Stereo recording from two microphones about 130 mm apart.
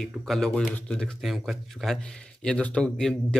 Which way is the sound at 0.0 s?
5° left (ahead or behind).